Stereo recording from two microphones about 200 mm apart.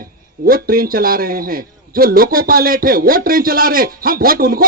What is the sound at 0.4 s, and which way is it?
A man's voice, 45° right (ahead or behind).